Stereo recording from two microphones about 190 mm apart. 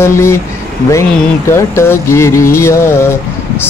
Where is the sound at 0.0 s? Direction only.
15° left (ahead or behind).